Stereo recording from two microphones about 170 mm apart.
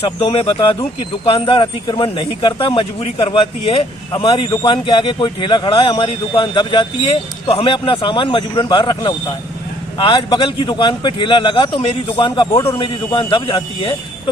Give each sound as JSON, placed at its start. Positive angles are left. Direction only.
{"t": 0.0, "sound": "speech", "side_deg": 30}